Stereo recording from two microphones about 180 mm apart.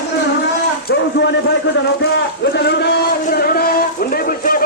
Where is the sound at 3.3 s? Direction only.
55° left (ahead or behind).